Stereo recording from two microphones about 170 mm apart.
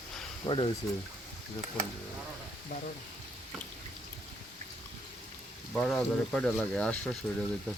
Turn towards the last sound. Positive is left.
turn(degrees=5)  # may be behind; listen again after turning